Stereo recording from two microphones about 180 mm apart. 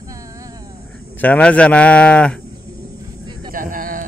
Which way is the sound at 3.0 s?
25° right (ahead or behind).